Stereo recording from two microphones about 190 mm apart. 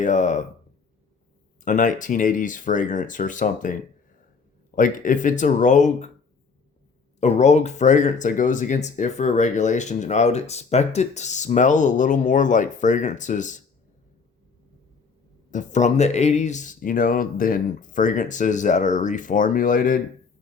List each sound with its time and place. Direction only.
0.0 s speech: 40° left (ahead or behind)
1.6 s speech: 45° left (ahead or behind)
7.2 s speech: 40° left (ahead or behind)
15.4 s speech: 40° left (ahead or behind)